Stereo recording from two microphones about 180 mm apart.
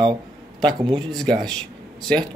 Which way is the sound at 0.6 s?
25° right (ahead or behind).